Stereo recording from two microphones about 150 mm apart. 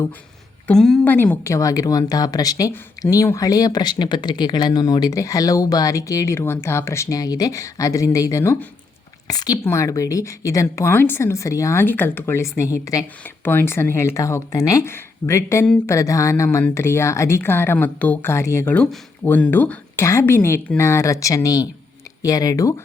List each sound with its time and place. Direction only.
0.7 s a woman's voice: 5° left (ahead or behind); by 22.7 s 25° left (ahead or behind)